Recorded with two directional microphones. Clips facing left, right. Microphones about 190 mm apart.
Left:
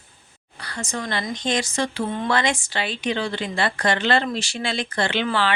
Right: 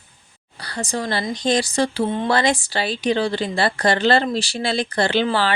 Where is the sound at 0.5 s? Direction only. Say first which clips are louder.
Right 4 dB; 35° right (ahead or behind).